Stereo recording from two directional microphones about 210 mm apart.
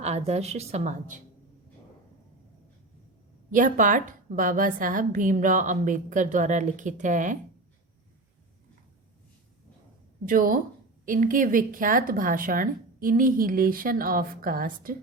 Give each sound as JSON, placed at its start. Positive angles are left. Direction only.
{"t": 0.0, "sound": "speech", "side_deg": -30}
{"t": 3.5, "sound": "speech", "side_deg": -40}
{"t": 10.2, "sound": "speech", "side_deg": -40}